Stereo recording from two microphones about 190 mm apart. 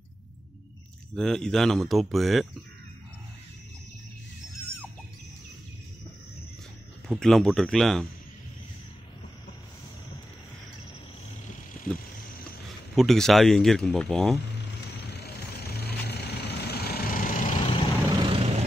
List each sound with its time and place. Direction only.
1.1 s speech: 5° left (ahead or behind)
7.1 s speech: centre (ahead or behind)
12.9 s speech: centre (ahead or behind)
15.0 s vehicle: 60° left (ahead or behind); by 17.6 s 45° left (ahead or behind)
17.6 s vehicle: 30° left (ahead or behind)
18.2 s vehicle: 30° right (ahead or behind)